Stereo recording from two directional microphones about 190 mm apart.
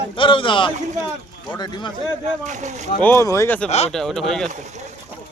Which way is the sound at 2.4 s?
40° right (ahead or behind).